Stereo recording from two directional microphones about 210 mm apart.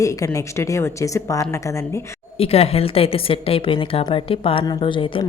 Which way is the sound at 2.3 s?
30° left (ahead or behind).